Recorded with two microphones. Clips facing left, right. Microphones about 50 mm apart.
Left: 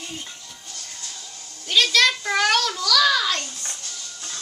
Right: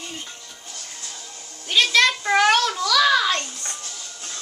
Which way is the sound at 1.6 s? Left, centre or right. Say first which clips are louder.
Right 1 dB; centre.